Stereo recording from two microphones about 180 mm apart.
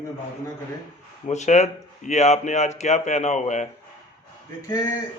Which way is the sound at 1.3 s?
40° left (ahead or behind).